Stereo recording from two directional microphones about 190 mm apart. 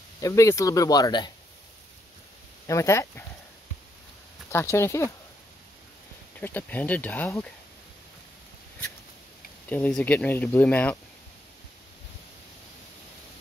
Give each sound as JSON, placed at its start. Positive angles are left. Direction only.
{"t": 0.2, "sound": "speech", "side_deg": 15}
{"t": 2.6, "sound": "speech", "side_deg": 15}
{"t": 4.5, "sound": "speech", "side_deg": 15}
{"t": 6.4, "sound": "speech", "side_deg": 10}
{"t": 9.7, "sound": "speech", "side_deg": 5}